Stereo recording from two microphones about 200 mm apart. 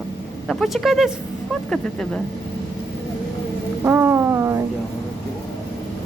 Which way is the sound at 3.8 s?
10° right (ahead or behind).